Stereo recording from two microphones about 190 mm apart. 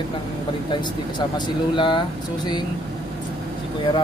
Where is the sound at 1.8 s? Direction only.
25° left (ahead or behind).